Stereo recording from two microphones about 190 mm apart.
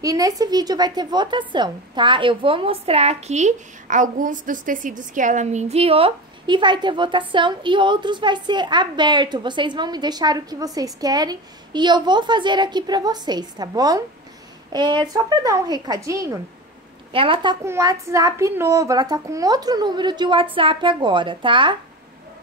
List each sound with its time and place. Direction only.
0.0 s a woman's voice: 20° right (ahead or behind)
17.1 s a woman's voice: 30° right (ahead or behind)